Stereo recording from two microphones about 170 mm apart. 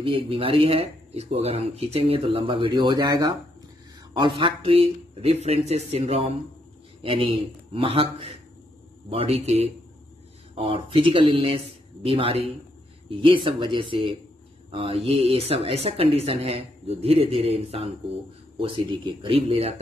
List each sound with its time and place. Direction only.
0.0 s speech: 30° right (ahead or behind)